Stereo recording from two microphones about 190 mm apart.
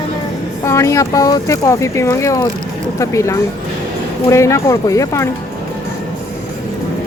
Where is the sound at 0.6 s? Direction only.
15° left (ahead or behind).